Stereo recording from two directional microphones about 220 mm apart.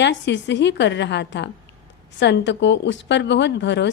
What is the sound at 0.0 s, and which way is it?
A woman's voice, 55° left (ahead or behind).